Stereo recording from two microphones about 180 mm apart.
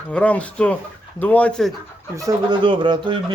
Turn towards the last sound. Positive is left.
turn(degrees=-25)  # may be behind; listen again after turning